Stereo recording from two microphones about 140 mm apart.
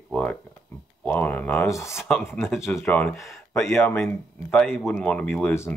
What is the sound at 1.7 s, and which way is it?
Speech, 20° left (ahead or behind).